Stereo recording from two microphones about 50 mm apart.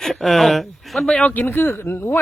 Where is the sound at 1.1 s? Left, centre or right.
Left.